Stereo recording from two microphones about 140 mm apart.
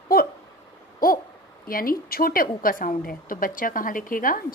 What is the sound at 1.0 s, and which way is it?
Owl, 90° left.